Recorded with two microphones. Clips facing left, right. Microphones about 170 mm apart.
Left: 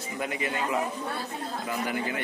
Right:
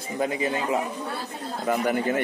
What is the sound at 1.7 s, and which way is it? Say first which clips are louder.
Speech: right 8 dB; 50° right (ahead or behind).